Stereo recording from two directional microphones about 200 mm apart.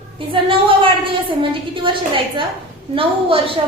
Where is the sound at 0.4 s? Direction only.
25° right (ahead or behind).